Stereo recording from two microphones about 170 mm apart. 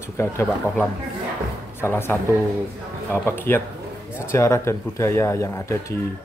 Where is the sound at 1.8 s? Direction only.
15° left (ahead or behind).